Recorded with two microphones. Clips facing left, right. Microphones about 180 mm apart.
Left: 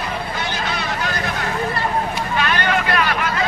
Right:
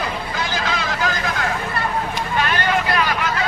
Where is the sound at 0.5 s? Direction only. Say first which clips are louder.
Right 1 dB; 90° right.